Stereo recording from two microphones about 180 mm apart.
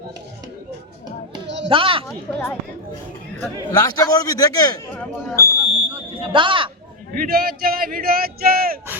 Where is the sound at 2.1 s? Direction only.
15° left (ahead or behind).